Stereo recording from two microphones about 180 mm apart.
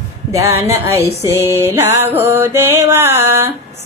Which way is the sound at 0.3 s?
15° right (ahead or behind).